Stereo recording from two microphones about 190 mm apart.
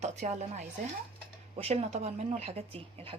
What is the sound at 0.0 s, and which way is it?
A woman's voice, 35° right (ahead or behind).